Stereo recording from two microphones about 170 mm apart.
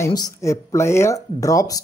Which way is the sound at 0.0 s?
20° left (ahead or behind).